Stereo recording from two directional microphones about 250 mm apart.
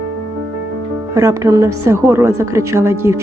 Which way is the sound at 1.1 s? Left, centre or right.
Centre.